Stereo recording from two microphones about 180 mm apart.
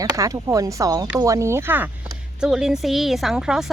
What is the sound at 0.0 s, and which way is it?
A woman's voice, 20° right (ahead or behind).